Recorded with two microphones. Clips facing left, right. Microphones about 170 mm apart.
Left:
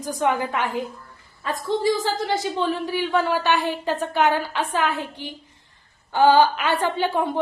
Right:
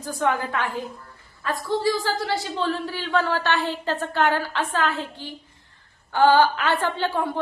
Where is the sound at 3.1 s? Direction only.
15° left (ahead or behind).